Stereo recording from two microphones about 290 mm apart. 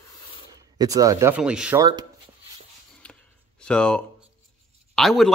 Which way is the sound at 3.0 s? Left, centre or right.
Centre.